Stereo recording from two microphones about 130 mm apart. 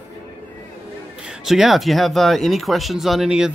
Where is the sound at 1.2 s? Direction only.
5° right (ahead or behind).